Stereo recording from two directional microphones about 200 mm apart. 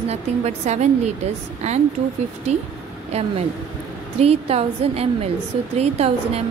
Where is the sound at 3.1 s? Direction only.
30° right (ahead or behind).